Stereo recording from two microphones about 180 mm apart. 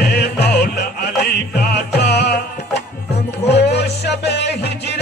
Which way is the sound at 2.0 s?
70° left (ahead or behind).